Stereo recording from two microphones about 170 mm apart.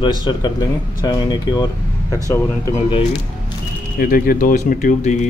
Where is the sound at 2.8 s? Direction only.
35° left (ahead or behind).